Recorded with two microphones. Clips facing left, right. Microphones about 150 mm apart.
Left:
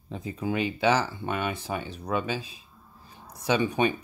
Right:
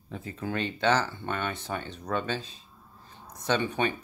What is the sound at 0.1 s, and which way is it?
Speech, 15° left (ahead or behind).